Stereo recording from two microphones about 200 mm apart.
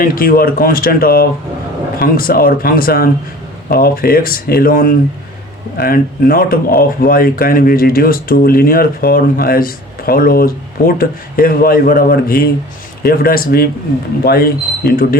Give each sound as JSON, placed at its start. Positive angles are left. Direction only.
{"t": 0.0, "sound": "speech", "side_deg": 45}